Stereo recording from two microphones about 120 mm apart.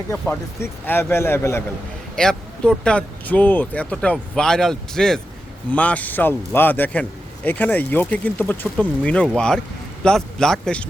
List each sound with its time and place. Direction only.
0.1 s a man's voice: 15° left (ahead or behind)
2.1 s a man's voice: 5° left (ahead or behind)